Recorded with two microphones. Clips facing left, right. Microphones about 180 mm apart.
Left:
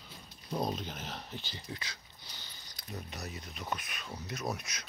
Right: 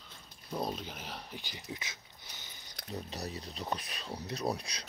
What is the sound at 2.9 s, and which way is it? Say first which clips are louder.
Speech: right 3 dB; 35° right (ahead or behind).